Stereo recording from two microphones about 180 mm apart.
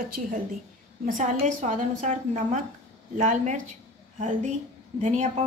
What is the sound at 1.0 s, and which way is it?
A woman's voice, 45° right (ahead or behind).